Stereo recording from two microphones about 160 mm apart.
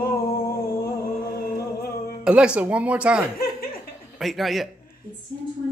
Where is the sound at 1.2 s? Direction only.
70° left (ahead or behind).